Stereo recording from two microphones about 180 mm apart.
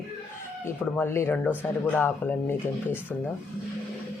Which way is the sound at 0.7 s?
15° left (ahead or behind).